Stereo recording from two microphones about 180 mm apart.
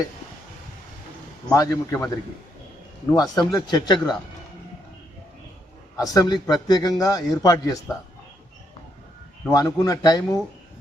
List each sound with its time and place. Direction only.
1.5 s a man's voice: 20° left (ahead or behind)
6.0 s a man's voice: 20° left (ahead or behind)
9.5 s a man's voice: 20° left (ahead or behind)